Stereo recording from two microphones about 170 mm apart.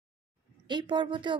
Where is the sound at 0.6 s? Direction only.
25° right (ahead or behind).